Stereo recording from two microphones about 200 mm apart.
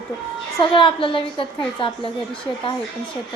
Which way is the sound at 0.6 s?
25° left (ahead or behind).